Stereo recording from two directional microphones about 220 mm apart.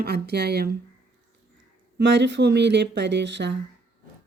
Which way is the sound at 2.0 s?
55° right (ahead or behind).